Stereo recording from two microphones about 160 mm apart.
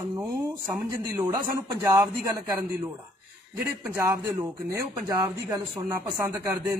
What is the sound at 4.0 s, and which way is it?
A man's voice, 15° right (ahead or behind).